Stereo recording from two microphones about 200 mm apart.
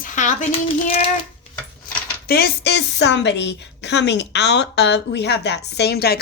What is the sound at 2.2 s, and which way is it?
A woman's voice, 50° left (ahead or behind).